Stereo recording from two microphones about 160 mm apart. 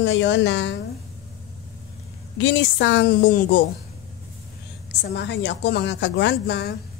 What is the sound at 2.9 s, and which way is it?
Speech, 90° left.